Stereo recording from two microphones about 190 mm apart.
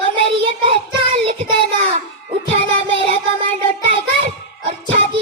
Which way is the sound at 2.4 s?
35° right (ahead or behind).